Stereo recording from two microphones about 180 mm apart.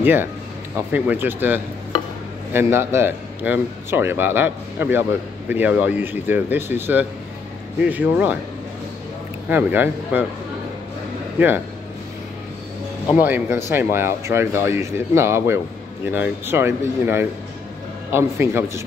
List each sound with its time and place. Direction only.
0.0 s a man's voice: 10° right (ahead or behind)
9.5 s a man's voice: 10° right (ahead or behind)
11.3 s a man's voice: 10° right (ahead or behind)
13.1 s a man's voice: 10° right (ahead or behind)